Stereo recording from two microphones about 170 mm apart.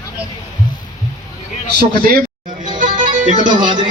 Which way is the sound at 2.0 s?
55° right (ahead or behind).